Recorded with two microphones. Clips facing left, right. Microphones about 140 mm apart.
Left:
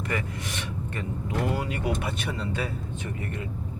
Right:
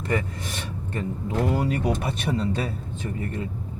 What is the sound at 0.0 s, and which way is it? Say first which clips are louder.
Speech: right 4 dB; 30° right (ahead or behind).